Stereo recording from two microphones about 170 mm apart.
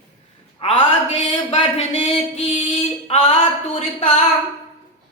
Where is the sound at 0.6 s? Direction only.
40° left (ahead or behind).